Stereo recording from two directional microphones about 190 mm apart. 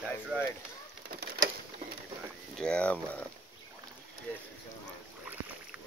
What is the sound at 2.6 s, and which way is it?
Speech, 5° left (ahead or behind).